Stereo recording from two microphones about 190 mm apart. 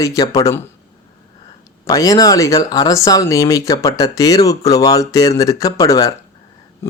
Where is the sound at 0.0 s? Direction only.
20° left (ahead or behind).